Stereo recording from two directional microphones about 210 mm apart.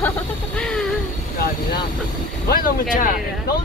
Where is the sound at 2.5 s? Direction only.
40° left (ahead or behind).